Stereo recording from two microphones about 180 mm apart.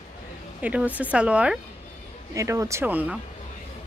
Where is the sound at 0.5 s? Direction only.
5° right (ahead or behind).